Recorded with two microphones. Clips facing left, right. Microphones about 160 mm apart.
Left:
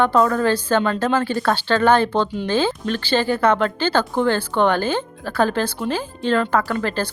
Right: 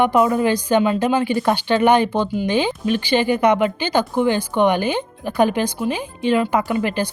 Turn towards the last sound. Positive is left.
turn(degrees=-15)  # may be behind; listen again after turning